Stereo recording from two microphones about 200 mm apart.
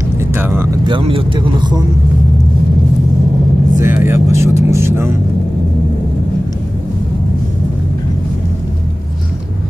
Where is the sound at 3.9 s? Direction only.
10° right (ahead or behind).